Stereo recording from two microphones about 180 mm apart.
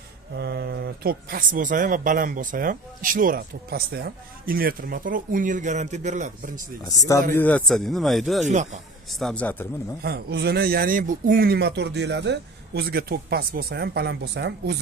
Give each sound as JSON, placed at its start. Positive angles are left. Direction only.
{"t": 0.3, "sound": "speech", "side_deg": -65}
{"t": 7.1, "sound": "speech", "side_deg": 15}
{"t": 8.5, "sound": "speech", "side_deg": -40}
{"t": 9.1, "sound": "a man's voice", "side_deg": 5}
{"t": 10.0, "sound": "speech", "side_deg": -60}